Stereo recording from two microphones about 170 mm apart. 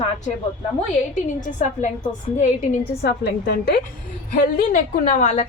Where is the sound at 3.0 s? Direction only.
70° left (ahead or behind).